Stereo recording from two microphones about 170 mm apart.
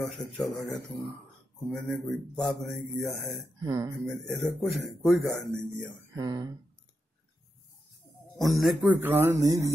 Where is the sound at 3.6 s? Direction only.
25° right (ahead or behind).